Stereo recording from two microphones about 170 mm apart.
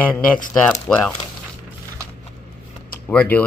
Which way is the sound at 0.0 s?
5° left (ahead or behind).